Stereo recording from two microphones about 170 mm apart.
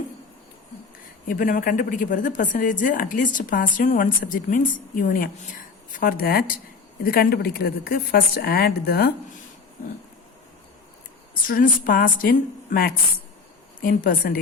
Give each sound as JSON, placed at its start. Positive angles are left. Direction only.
{"t": 1.3, "sound": "a woman's voice", "side_deg": 55}
{"t": 11.4, "sound": "a woman's voice", "side_deg": 55}